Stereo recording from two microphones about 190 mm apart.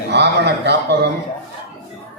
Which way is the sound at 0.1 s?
60° right (ahead or behind).